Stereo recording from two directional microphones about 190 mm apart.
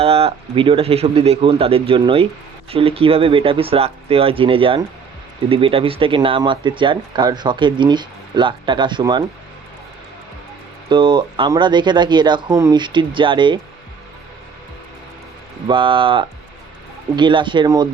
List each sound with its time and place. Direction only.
0.0 s speech: 30° right (ahead or behind)
10.8 s speech: 25° right (ahead or behind)
15.6 s speech: 25° right (ahead or behind)